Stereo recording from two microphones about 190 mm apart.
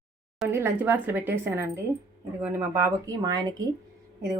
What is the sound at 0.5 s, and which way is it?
A woman's voice, 15° right (ahead or behind).